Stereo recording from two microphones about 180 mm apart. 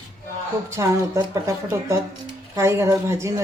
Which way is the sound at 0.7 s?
15° right (ahead or behind).